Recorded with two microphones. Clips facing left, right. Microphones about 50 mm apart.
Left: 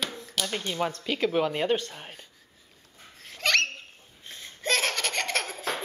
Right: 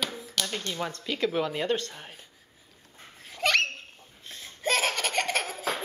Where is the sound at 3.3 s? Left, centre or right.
Centre.